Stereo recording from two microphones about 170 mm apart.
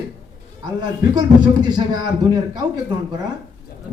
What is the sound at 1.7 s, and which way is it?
Speech, 25° right (ahead or behind).